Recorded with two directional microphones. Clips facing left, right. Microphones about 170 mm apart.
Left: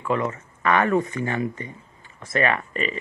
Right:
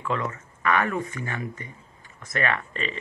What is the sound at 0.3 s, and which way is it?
Speech, 30° left (ahead or behind).